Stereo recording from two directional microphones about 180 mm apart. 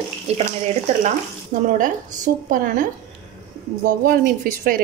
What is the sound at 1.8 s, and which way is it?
A woman's voice, 50° right (ahead or behind).